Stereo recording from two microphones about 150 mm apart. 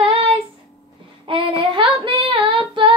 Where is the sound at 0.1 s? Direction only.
40° right (ahead or behind).